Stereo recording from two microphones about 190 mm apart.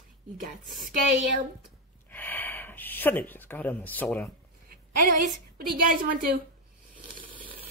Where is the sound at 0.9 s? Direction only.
45° right (ahead or behind).